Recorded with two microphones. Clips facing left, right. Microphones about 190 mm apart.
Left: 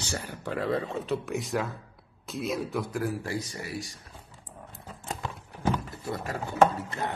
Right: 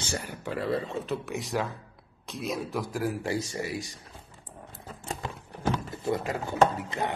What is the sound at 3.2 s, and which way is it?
Speech, 25° right (ahead or behind).